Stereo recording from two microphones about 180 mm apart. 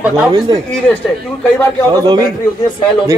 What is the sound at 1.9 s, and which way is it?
Speech, 25° right (ahead or behind).